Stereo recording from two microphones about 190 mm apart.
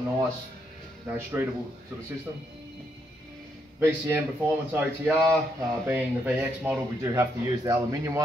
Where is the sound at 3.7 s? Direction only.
10° right (ahead or behind).